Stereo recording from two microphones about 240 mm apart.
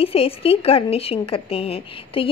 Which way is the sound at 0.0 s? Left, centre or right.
Left.